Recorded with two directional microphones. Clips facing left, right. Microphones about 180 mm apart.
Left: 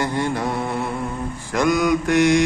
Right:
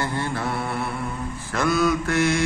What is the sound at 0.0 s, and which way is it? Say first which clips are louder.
Mantra: left 4 dB; 15° left (ahead or behind).